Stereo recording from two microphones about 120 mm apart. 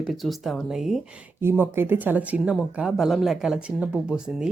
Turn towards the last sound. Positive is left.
turn(degrees=-10)  # may be behind; listen again after turning